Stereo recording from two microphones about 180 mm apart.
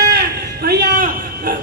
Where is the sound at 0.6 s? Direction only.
55° right (ahead or behind).